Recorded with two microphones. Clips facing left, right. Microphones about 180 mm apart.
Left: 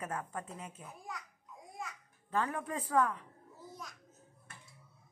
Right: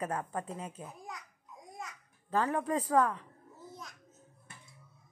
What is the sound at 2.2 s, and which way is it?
Speech, 35° right (ahead or behind).